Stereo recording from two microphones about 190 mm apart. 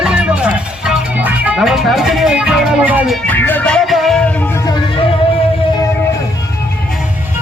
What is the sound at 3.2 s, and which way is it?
Music, 10° left (ahead or behind).